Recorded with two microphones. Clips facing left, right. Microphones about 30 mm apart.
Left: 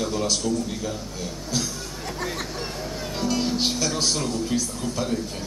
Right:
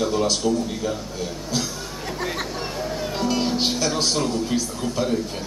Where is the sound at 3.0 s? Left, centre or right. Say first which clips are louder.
Right 2 dB; centre.